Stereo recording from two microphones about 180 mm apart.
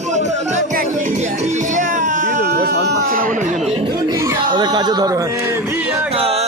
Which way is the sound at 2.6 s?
75° right (ahead or behind).